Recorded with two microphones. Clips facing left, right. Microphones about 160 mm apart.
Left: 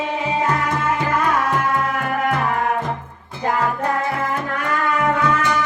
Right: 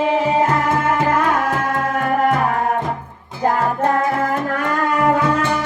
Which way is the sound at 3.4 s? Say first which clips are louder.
Right 3 dB; 45° right (ahead or behind).